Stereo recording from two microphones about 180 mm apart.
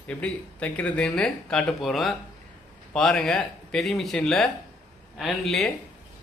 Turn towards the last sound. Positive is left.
turn(degrees=0)  # may be behind; listen again after turning